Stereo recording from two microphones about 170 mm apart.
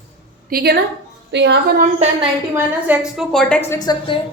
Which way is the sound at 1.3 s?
90° right.